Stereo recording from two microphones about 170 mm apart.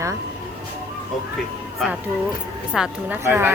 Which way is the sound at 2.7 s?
5° right (ahead or behind).